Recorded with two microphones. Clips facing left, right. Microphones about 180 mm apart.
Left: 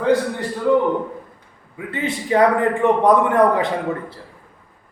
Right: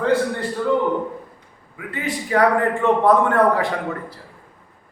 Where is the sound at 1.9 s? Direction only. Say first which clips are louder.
Left 2 dB; 25° left (ahead or behind).